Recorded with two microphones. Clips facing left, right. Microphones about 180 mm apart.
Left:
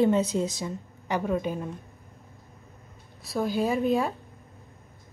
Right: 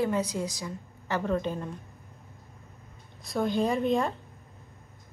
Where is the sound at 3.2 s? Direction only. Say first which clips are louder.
Even; centre (ahead or behind).